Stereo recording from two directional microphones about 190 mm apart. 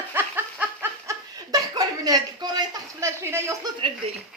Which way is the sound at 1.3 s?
20° right (ahead or behind).